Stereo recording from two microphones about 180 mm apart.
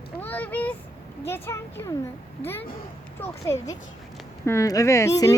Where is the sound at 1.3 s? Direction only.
15° left (ahead or behind).